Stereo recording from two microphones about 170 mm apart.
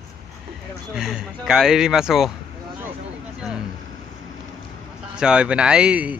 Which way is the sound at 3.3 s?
5° right (ahead or behind).